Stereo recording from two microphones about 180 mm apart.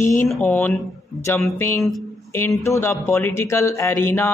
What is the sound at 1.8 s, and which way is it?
Speech, centre (ahead or behind).